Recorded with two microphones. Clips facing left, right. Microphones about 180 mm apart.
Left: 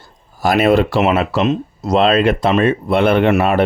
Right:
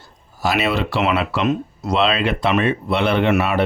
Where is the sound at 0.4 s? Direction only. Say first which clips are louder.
Left 7 dB; 50° left (ahead or behind).